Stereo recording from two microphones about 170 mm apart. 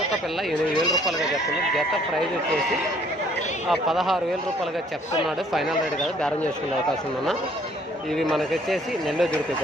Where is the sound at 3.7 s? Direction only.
Centre (ahead or behind).